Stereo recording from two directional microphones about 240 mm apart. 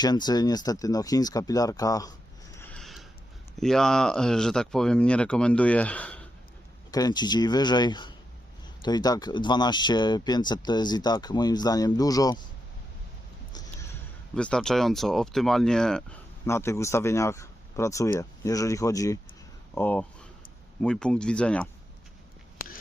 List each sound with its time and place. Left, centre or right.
0.0 s speech: centre
2.6 s a sound: centre
3.6 s speech: centre
6.9 s speech: centre
13.5 s a sound: centre
14.3 s speech: centre